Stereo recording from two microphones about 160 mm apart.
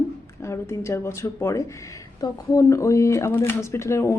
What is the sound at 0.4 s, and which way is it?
Speech, 15° left (ahead or behind).